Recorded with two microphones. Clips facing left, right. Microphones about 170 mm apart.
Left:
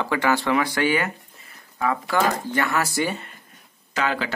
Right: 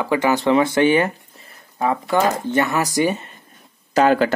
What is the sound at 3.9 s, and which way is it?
Speech, 45° right (ahead or behind).